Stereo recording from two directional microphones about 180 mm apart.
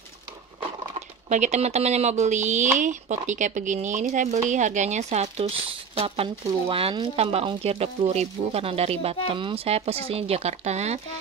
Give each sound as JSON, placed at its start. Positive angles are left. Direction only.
{"t": 1.3, "sound": "speech", "side_deg": -40}